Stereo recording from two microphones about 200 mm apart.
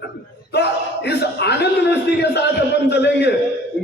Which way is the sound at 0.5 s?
55° left (ahead or behind).